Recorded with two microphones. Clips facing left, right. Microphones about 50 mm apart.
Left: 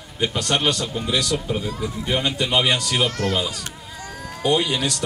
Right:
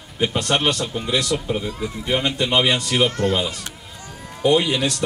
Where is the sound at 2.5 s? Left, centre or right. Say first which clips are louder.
Right 1 dB; centre.